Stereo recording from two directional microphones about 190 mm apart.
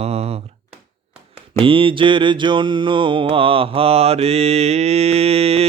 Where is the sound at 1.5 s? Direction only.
25° right (ahead or behind).